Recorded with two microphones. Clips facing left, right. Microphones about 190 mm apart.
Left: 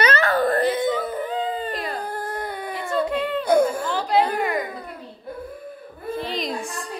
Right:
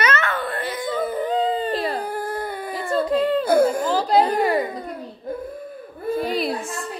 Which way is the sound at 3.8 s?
35° right (ahead or behind).